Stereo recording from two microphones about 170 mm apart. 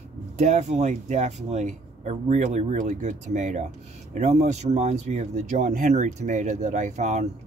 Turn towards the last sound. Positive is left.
turn(degrees=-40)  # may be behind; listen again after turning